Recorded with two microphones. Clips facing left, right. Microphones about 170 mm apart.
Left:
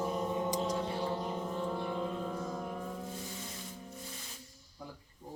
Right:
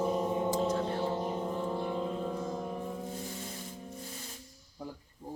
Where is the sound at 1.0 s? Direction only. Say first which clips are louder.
Right 3 dB; 25° right (ahead or behind).